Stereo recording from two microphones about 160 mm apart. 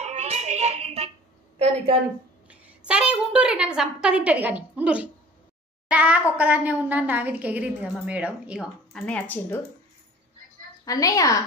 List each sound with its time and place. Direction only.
0.0 s music: 45° right (ahead or behind)
2.5 s a woman's voice: 5° right (ahead or behind)
9.0 s speech: 10° left (ahead or behind)
10.9 s a woman's voice: 20° left (ahead or behind)